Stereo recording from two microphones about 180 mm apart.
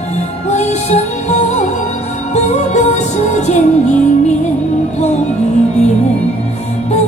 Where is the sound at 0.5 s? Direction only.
40° left (ahead or behind).